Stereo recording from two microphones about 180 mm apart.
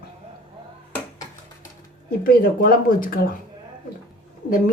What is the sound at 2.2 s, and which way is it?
Speech, 50° left (ahead or behind).